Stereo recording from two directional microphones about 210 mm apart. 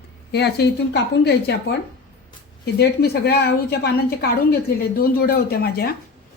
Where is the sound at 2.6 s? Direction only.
50° left (ahead or behind).